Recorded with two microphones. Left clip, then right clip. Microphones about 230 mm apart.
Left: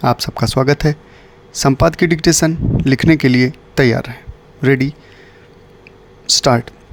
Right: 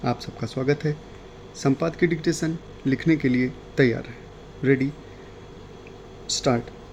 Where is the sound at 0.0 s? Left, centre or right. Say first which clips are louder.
Left 12 dB; left.